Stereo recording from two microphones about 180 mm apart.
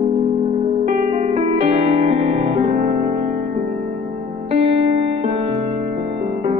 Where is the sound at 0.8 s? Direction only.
40° right (ahead or behind).